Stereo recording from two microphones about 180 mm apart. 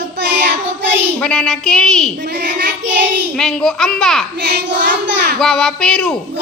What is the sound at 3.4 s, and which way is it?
Speech, 5° left (ahead or behind).